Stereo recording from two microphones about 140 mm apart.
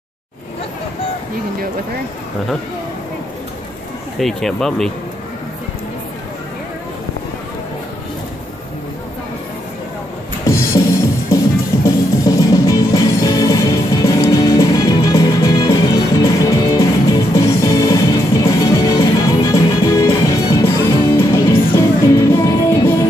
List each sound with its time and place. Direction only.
4.2 s speech: centre (ahead or behind)
10.4 s music: 20° left (ahead or behind)
11.8 s music: 25° left (ahead or behind)